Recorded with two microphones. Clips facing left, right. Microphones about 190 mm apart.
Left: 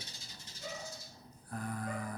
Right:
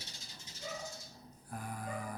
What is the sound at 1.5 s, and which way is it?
Music, 10° right (ahead or behind).